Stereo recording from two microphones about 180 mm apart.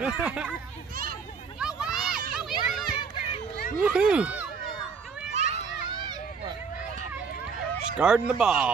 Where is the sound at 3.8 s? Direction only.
5° right (ahead or behind).